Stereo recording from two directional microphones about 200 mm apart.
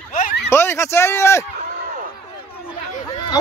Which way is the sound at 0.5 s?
10° left (ahead or behind).